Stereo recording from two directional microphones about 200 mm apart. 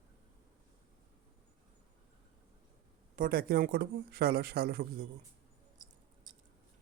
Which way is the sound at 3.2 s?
45° right (ahead or behind).